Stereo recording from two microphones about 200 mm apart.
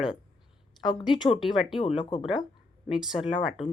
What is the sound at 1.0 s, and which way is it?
Speech, 20° left (ahead or behind).